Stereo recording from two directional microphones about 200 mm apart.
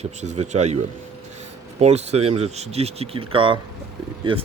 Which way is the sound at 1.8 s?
30° right (ahead or behind).